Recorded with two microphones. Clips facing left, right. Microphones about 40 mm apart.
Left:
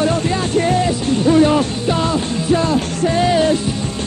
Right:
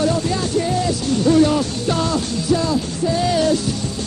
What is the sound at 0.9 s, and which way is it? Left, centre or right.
Music, left.